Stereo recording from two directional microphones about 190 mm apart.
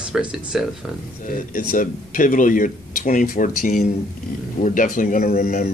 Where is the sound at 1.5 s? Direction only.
45° left (ahead or behind).